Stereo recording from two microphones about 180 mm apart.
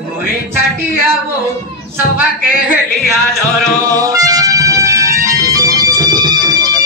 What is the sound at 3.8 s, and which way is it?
Music, 20° right (ahead or behind).